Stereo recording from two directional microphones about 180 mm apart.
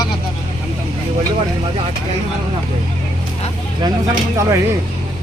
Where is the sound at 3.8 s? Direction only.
20° right (ahead or behind).